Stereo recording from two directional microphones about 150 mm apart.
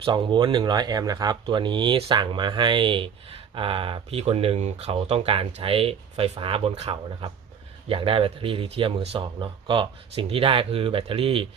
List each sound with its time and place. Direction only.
0.0 s speech: 35° right (ahead or behind)